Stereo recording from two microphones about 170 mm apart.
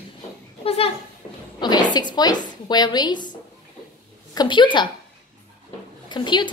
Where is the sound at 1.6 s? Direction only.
25° left (ahead or behind).